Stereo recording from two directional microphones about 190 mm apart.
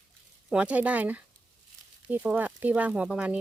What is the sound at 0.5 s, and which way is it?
Speech, 5° right (ahead or behind).